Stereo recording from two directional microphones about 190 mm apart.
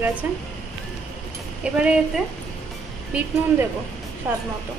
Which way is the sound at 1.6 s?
5° right (ahead or behind).